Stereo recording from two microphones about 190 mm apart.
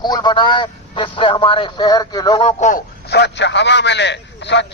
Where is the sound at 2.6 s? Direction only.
40° left (ahead or behind).